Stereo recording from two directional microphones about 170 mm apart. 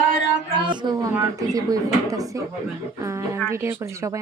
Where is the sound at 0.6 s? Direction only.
25° right (ahead or behind).